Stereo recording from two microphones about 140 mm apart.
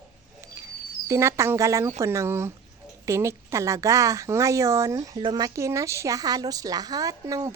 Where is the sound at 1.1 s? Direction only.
20° right (ahead or behind).